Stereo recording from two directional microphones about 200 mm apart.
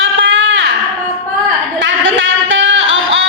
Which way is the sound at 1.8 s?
70° right (ahead or behind).